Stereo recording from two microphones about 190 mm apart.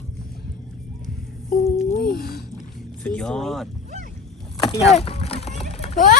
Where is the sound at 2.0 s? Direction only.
55° left (ahead or behind).